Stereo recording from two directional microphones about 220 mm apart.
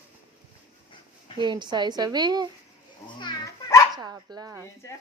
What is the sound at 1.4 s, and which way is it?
Speech, 20° right (ahead or behind).